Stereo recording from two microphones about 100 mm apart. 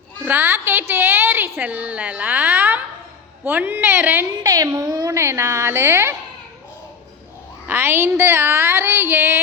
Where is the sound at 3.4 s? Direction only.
20° right (ahead or behind).